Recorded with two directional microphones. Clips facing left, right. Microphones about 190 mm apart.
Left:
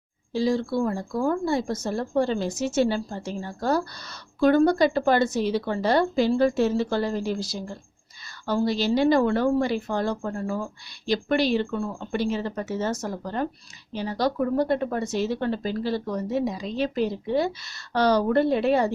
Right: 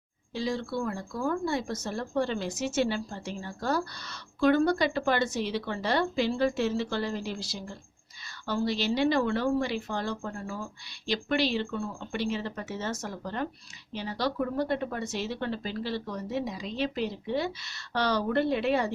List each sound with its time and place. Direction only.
0.3 s speech: 40° left (ahead or behind)